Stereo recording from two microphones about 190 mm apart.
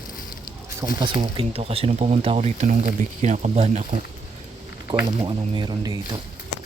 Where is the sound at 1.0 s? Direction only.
25° right (ahead or behind).